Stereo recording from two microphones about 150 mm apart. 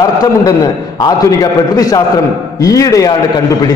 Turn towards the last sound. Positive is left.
turn(degrees=25)  # may be behind; listen again after turning